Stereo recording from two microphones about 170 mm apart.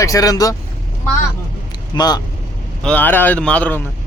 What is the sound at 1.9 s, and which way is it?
Speech, 25° left (ahead or behind).